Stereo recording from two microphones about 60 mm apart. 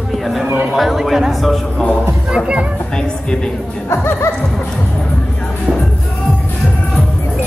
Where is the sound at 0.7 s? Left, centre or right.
Centre.